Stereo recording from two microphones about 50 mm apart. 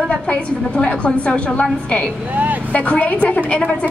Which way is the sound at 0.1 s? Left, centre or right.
Left.